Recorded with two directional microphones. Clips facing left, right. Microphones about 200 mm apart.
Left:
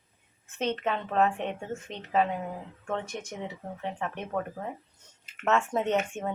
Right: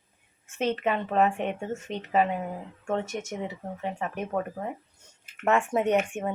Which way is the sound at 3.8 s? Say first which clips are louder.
Right 3 dB; 10° right (ahead or behind).